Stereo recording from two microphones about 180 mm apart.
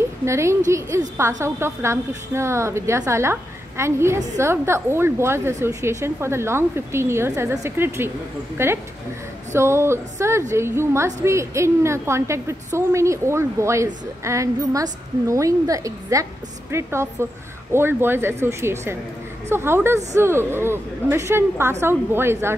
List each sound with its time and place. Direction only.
0.2 s a woman's voice: 15° right (ahead or behind)